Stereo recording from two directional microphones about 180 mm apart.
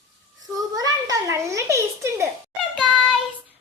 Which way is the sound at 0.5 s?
20° right (ahead or behind).